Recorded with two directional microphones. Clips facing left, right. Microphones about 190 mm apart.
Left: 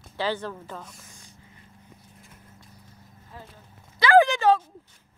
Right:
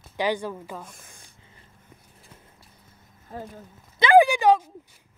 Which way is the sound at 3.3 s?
45° right (ahead or behind).